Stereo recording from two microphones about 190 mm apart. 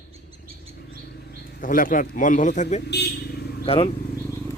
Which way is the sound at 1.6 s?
45° left (ahead or behind).